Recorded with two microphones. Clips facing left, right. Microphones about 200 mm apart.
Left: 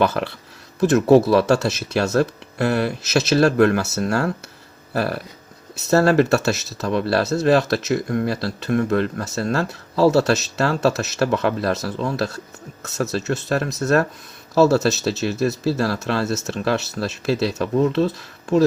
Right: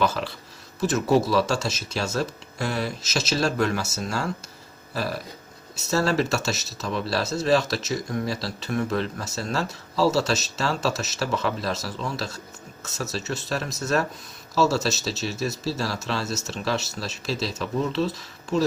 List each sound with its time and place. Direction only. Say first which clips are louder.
0.0 s speech: left 5 dB; 60° left (ahead or behind)